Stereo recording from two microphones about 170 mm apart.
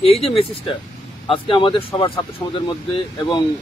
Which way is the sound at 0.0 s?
35° left (ahead or behind).